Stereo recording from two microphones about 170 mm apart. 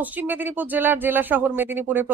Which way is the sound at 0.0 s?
10° right (ahead or behind).